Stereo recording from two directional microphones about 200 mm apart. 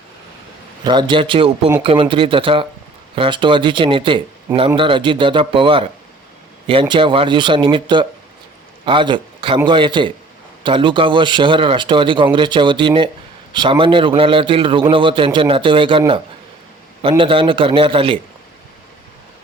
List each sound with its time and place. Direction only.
0.9 s speech: 25° right (ahead or behind)